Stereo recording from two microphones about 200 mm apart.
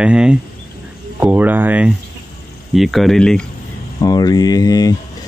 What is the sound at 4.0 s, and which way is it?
Speech, 20° left (ahead or behind).